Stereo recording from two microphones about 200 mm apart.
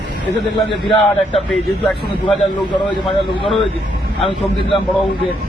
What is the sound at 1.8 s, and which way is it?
Speech, centre (ahead or behind).